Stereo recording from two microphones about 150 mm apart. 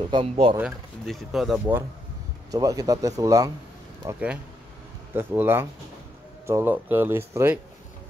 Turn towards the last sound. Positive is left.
turn(degrees=-15)  # may be behind; listen again after turning